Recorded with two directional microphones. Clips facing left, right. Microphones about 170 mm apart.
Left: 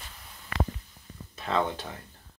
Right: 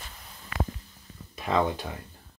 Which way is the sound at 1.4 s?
15° right (ahead or behind).